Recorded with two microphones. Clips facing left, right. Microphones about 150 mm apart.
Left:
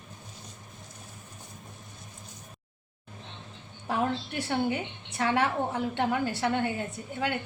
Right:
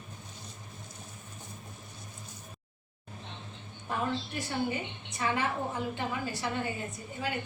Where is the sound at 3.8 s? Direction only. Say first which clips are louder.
Left 4 dB; 70° left (ahead or behind).